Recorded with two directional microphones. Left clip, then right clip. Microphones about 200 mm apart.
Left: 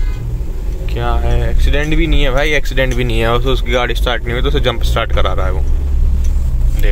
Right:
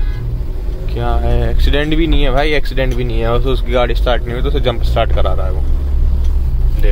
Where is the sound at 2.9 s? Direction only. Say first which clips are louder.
Left 2 dB; 15° left (ahead or behind).